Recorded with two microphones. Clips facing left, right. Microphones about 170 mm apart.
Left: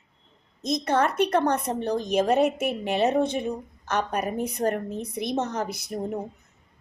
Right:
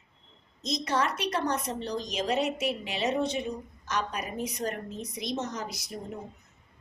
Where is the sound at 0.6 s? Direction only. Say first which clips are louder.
Left 5 dB; 55° left (ahead or behind).